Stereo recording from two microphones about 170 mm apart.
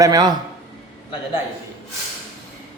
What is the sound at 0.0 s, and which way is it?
Speech, 25° right (ahead or behind).